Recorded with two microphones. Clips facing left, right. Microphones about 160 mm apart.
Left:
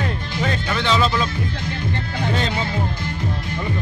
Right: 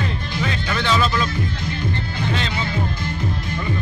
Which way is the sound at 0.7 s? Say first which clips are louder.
Even; 20° left (ahead or behind).